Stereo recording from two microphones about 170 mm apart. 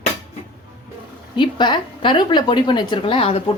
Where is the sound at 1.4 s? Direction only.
25° left (ahead or behind).